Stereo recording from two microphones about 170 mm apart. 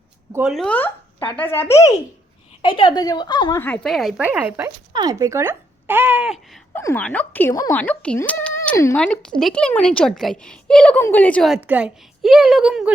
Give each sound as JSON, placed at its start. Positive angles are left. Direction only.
{"t": 0.5, "sound": "speech", "side_deg": 5}
{"t": 2.6, "sound": "a woman's voice", "side_deg": 30}
{"t": 3.6, "sound": "speech", "side_deg": 5}
{"t": 4.9, "sound": "speech", "side_deg": -25}
{"t": 6.7, "sound": "a child's voice", "side_deg": 10}
{"t": 9.0, "sound": "a woman's voice", "side_deg": 5}